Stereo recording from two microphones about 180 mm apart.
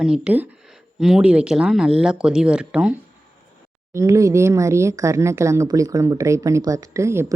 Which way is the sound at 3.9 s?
15° right (ahead or behind).